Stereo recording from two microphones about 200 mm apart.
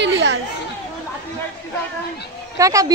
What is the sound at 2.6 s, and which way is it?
Speech, 15° right (ahead or behind).